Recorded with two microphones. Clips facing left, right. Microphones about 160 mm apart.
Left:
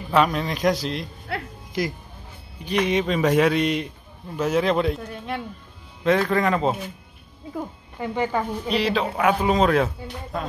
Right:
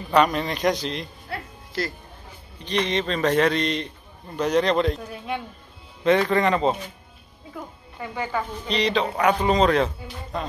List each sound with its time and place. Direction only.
0.1 s speech: centre (ahead or behind)
1.7 s a man's voice: 15° left (ahead or behind)
8.0 s speech: 25° left (ahead or behind)
8.6 s speech: 5° left (ahead or behind)